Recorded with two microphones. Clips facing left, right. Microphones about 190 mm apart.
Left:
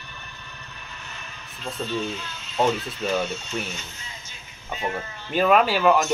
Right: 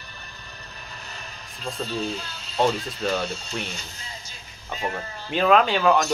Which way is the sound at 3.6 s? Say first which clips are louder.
Left 1 dB; 35° right (ahead or behind).